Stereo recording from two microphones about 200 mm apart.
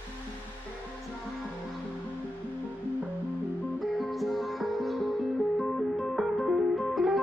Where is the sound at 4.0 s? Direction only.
Centre (ahead or behind).